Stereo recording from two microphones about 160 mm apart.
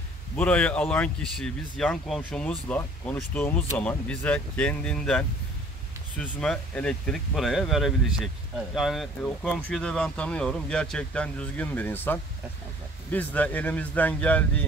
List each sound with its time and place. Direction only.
0.4 s speech: 10° left (ahead or behind)